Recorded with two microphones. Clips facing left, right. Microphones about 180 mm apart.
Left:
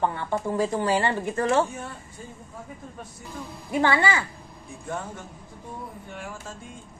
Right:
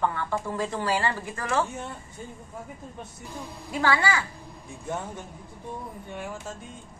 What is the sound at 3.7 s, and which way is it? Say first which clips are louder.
Speech: left 2 dB; 20° left (ahead or behind).